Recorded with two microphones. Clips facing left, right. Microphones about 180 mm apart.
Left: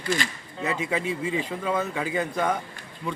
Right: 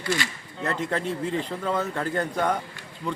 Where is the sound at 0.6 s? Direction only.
10° left (ahead or behind).